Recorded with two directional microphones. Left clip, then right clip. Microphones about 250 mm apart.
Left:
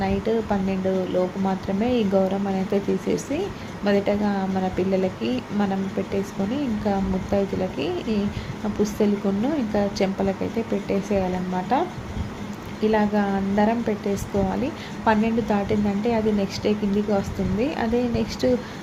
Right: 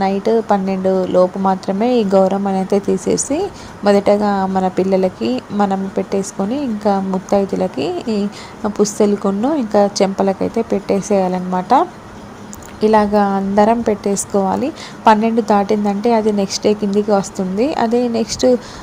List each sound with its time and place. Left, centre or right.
0.0 s speech: right